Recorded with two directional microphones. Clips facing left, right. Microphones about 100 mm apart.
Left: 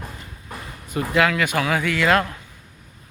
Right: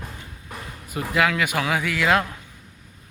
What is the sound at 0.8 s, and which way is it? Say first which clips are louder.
Speech: left 2 dB; 5° right (ahead or behind).